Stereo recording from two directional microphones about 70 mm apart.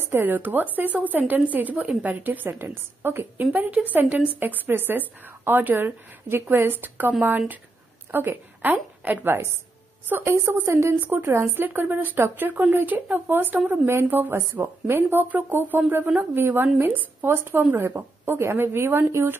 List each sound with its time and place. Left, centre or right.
0.0 s a woman's voice: right
11.0 s a woman's voice: right